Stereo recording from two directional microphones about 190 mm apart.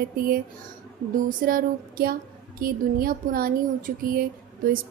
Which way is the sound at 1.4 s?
50° right (ahead or behind).